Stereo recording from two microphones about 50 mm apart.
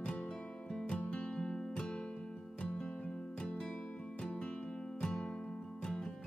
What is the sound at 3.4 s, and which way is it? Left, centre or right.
Music, centre.